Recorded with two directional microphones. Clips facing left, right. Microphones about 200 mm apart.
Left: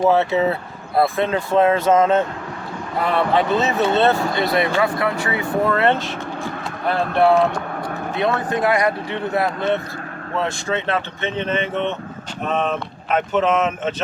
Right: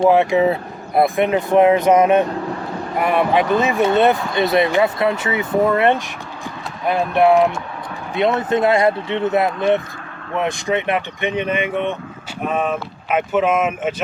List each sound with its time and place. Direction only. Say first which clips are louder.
0.1 s speech: right 3 dB; 15° right (ahead or behind)